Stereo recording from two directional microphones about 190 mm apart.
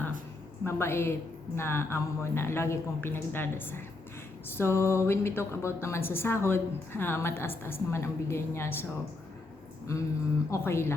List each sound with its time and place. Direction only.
0.6 s a woman's voice: 15° left (ahead or behind)
9.9 s a woman's voice: 15° left (ahead or behind)